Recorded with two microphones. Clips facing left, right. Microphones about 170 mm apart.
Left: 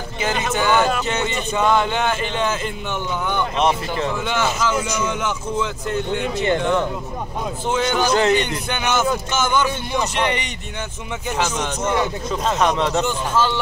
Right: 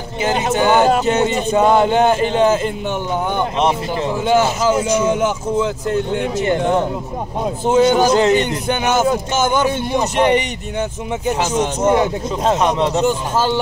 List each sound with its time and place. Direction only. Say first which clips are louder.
0.2 s speech: right 5 dB; 20° right (ahead or behind)
0.5 s speech: right 5 dB; 40° right (ahead or behind)
3.5 s speech: right 2 dB; 20° right (ahead or behind)
4.1 s speech: right 11 dB; 40° right (ahead or behind)
8.1 s speech: right 4 dB; 20° right (ahead or behind)
8.4 s speech: right 5 dB; 45° right (ahead or behind)
12.4 s speech: right 3 dB; 20° right (ahead or behind)
13.0 s speech: right 4 dB; 40° right (ahead or behind)